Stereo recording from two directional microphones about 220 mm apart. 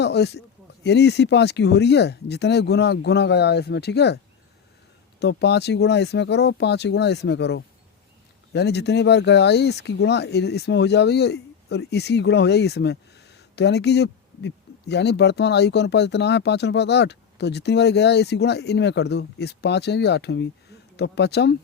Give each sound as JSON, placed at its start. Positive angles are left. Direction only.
{"t": 0.0, "sound": "speech", "side_deg": 50}
{"t": 5.2, "sound": "speech", "side_deg": 50}